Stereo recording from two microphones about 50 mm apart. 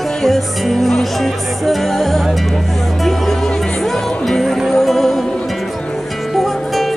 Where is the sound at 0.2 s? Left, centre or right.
Centre.